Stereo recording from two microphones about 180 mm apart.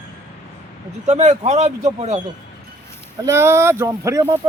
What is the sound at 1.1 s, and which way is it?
Speech, 40° right (ahead or behind).